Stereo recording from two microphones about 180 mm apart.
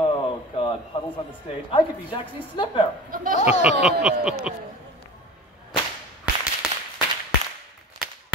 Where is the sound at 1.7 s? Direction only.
25° left (ahead or behind).